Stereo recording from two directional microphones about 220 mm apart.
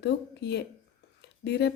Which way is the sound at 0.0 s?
50° left (ahead or behind).